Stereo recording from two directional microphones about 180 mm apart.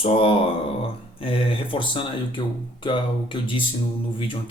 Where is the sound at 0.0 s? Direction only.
30° left (ahead or behind).